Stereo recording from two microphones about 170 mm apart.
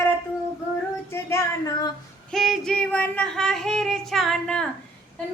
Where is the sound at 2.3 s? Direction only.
Centre (ahead or behind).